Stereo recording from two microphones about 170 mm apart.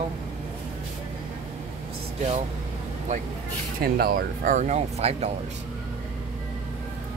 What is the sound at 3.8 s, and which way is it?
Speech, 60° right (ahead or behind).